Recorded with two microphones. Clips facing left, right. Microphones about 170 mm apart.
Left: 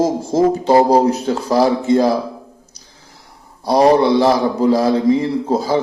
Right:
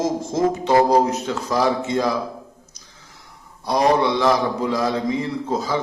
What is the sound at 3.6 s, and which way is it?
A man's voice, 35° left (ahead or behind).